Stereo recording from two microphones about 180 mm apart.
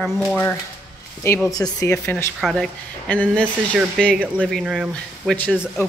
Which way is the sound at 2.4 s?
Centre (ahead or behind).